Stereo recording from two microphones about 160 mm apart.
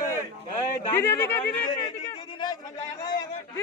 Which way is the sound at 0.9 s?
15° left (ahead or behind).